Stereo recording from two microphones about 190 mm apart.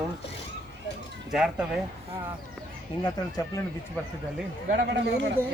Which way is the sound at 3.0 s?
15° left (ahead or behind).